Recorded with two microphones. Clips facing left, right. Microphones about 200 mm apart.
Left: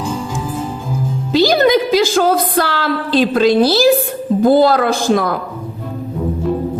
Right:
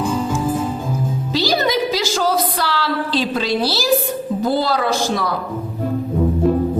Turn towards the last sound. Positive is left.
turn(degrees=55)  # may be behind; listen again after turning